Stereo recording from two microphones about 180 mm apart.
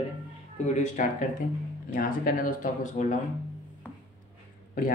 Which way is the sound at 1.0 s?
45° left (ahead or behind).